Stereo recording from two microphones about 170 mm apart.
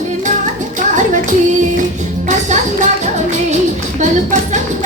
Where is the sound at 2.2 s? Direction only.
45° right (ahead or behind).